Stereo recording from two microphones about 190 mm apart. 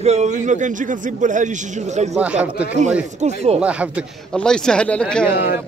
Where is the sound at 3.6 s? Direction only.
5° right (ahead or behind).